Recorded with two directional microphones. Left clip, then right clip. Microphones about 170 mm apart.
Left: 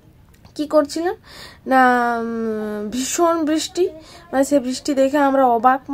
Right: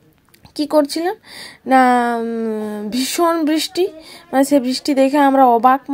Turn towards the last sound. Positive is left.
turn(degrees=-30)  # may be behind; listen again after turning